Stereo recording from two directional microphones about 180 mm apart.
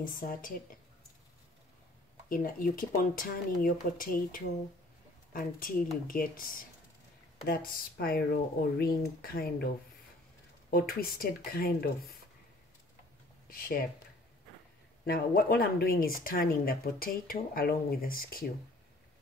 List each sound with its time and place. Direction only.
0.0 s speech: 50° left (ahead or behind)
2.2 s speech: 50° left (ahead or behind)
10.7 s speech: 55° left (ahead or behind)
13.5 s speech: 55° left (ahead or behind)
15.0 s speech: 55° left (ahead or behind)